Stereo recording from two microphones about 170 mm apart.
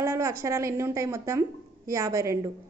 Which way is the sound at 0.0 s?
15° right (ahead or behind).